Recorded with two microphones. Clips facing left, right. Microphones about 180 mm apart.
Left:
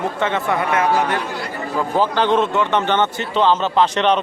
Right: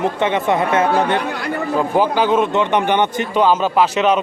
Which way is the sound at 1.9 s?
10° right (ahead or behind).